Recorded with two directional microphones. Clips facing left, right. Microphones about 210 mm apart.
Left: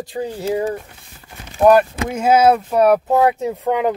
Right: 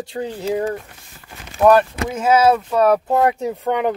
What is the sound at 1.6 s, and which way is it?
Speech, 30° left (ahead or behind).